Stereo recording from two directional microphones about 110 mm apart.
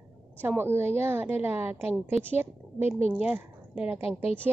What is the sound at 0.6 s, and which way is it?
A woman's voice, 20° right (ahead or behind).